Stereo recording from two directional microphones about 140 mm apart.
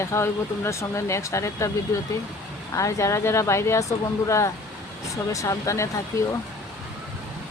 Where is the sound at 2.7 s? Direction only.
20° left (ahead or behind).